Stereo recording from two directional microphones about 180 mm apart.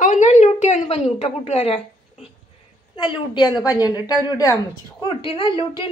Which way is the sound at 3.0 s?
25° left (ahead or behind).